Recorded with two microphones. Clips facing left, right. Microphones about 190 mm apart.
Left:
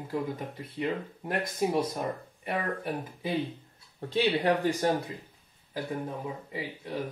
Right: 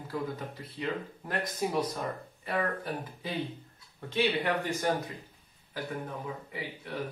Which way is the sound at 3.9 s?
35° left (ahead or behind).